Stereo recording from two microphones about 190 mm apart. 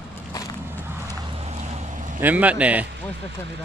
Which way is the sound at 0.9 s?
15° right (ahead or behind).